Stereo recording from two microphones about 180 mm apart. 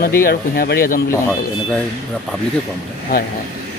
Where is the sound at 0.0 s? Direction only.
55° left (ahead or behind).